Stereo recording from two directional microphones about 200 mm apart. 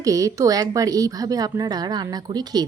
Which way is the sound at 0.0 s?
15° right (ahead or behind).